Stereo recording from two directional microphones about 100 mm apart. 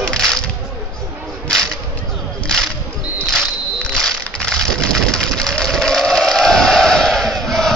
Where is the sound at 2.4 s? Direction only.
5° left (ahead or behind).